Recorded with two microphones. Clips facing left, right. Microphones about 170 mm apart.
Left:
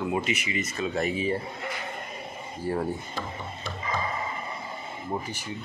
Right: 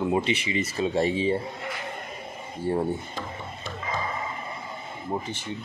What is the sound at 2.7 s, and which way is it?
Speech, 25° right (ahead or behind).